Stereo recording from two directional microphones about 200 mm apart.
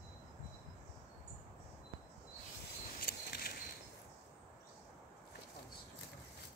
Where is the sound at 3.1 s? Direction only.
50° left (ahead or behind).